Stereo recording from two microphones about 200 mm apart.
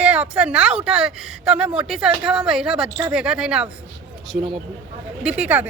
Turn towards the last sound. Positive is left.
turn(degrees=-10)  # may be behind; listen again after turning